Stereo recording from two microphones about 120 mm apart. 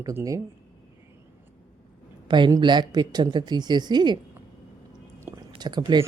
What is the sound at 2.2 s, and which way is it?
Speech, 40° right (ahead or behind).